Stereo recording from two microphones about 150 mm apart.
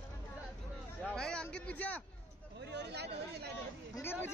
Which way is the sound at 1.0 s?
5° left (ahead or behind).